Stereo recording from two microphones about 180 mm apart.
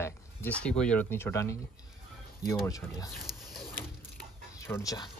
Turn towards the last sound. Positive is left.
turn(degrees=20)  # may be behind; listen again after turning